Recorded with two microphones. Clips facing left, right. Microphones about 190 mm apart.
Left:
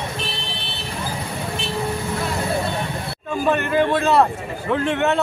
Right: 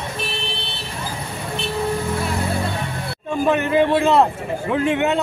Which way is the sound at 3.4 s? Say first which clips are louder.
Right 2 dB; 15° right (ahead or behind).